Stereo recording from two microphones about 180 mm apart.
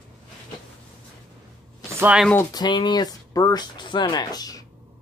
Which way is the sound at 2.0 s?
5° right (ahead or behind).